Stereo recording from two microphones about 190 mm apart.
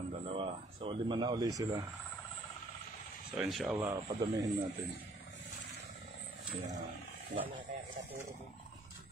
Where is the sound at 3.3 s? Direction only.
Centre (ahead or behind).